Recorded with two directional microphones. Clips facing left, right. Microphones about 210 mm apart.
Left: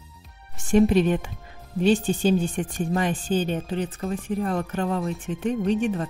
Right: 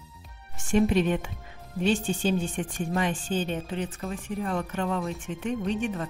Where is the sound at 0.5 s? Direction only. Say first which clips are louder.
Left 4 dB; 35° left (ahead or behind).